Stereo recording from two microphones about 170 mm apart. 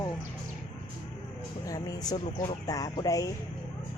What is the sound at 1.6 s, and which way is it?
Speech, 20° left (ahead or behind).